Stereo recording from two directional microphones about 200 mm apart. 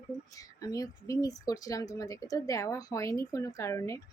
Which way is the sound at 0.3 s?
15° left (ahead or behind).